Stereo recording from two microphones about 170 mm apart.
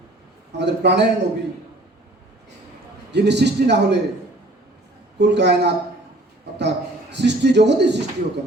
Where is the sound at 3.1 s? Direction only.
85° right.